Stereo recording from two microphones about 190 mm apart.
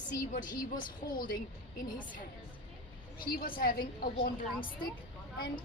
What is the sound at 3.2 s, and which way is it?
A woman's voice, 50° left (ahead or behind).